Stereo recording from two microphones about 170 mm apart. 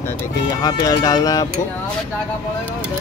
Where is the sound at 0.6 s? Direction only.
20° left (ahead or behind).